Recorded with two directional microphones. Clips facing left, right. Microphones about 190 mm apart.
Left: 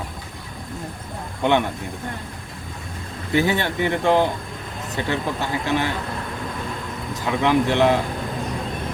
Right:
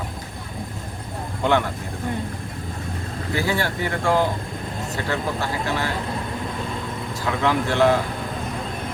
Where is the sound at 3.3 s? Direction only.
20° left (ahead or behind).